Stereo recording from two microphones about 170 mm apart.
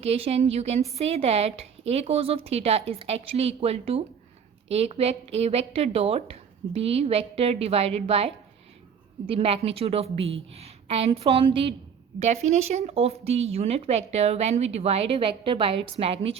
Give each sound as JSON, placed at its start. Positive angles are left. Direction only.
{"t": 0.0, "sound": "speech", "side_deg": -35}